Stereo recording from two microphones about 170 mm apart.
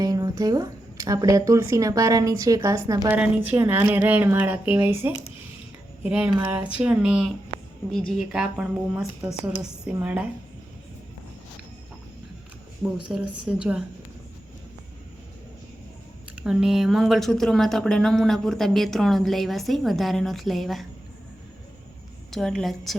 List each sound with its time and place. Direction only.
0.0 s a woman's voice: 20° right (ahead or behind)
3.2 s speech: 10° right (ahead or behind)
12.8 s speech: 5° right (ahead or behind)
16.3 s speech: 5° right (ahead or behind)
22.3 s speech: 5° left (ahead or behind)